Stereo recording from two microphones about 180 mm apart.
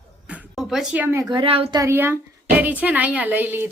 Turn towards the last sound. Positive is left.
turn(degrees=-10)  # may be behind; listen again after turning